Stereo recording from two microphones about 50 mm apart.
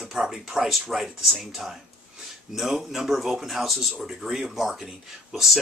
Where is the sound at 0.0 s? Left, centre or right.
Centre.